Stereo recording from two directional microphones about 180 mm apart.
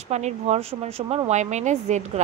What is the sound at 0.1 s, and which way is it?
A woman's voice, 35° right (ahead or behind).